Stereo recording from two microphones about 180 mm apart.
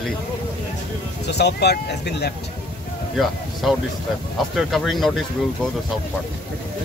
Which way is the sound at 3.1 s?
Centre (ahead or behind).